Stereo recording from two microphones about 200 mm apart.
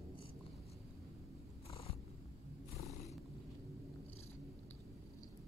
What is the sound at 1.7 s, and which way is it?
Purr, 30° left (ahead or behind).